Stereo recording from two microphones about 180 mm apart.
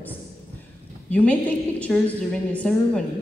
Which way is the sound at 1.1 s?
10° left (ahead or behind).